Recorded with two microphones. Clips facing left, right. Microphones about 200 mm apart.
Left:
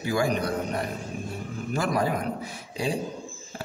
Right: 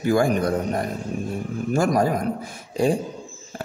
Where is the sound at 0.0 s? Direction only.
50° right (ahead or behind).